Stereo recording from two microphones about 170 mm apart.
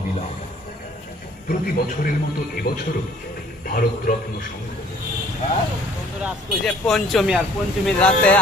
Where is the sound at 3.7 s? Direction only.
55° left (ahead or behind).